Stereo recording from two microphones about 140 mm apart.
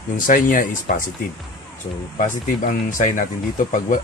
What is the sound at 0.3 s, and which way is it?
Speech, 75° left (ahead or behind).